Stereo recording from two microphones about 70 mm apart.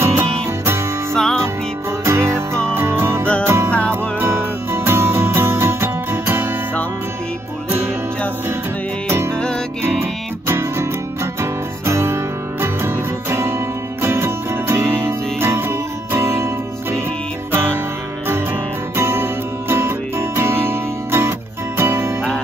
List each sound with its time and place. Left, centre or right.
1.1 s music: centre
2.0 s music: right
4.7 s music: right
9.9 s music: right
18.9 s music: right